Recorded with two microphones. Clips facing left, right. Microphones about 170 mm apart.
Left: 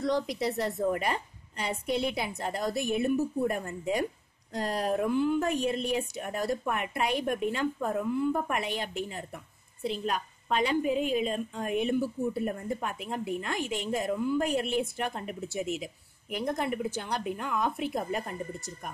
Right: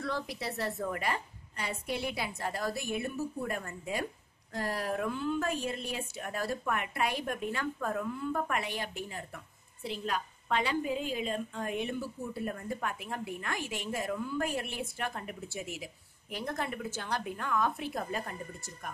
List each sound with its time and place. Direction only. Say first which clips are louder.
0.0 s a woman's voice: left 7 dB; 15° left (ahead or behind)